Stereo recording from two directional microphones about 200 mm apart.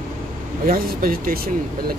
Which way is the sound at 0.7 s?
45° right (ahead or behind).